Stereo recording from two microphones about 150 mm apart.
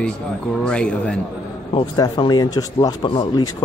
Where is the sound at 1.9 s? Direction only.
30° left (ahead or behind).